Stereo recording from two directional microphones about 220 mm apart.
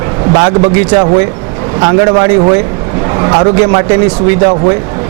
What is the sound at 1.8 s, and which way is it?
Speech, 20° right (ahead or behind).